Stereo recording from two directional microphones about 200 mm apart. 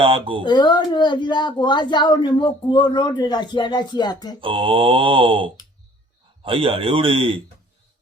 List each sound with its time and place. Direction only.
0.0 s mantra: 25° right (ahead or behind)
0.4 s speech: 20° left (ahead or behind)
4.4 s mantra: 25° right (ahead or behind)